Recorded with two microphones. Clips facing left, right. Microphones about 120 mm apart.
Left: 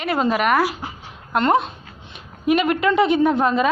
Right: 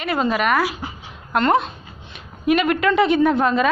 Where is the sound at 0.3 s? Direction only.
45° left (ahead or behind).